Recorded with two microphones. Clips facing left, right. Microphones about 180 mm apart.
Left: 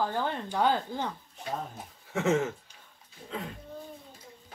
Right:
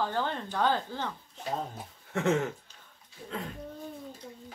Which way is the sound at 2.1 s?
Centre (ahead or behind).